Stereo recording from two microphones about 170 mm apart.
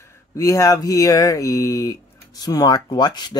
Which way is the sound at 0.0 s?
15° left (ahead or behind).